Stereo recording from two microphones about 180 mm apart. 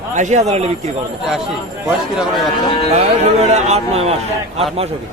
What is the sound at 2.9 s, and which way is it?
Speech, 40° right (ahead or behind).